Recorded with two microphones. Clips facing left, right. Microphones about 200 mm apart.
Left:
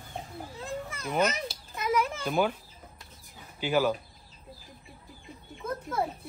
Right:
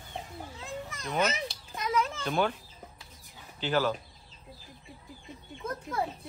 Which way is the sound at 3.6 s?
10° left (ahead or behind).